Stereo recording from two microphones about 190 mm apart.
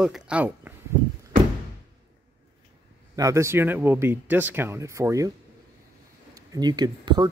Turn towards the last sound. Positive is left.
turn(degrees=-20)  # may be behind; listen again after turning